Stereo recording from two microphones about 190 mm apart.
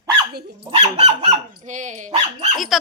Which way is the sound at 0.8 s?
30° right (ahead or behind).